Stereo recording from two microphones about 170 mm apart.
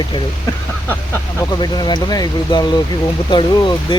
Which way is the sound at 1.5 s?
25° left (ahead or behind).